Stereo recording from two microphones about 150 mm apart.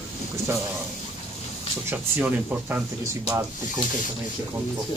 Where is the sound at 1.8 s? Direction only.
10° right (ahead or behind).